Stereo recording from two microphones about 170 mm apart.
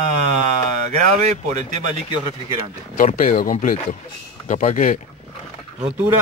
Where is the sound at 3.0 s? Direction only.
50° left (ahead or behind).